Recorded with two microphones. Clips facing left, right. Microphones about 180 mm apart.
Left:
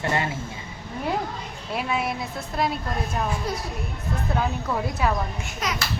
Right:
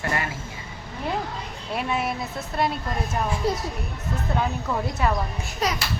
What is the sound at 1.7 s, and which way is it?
A woman's voice, centre (ahead or behind).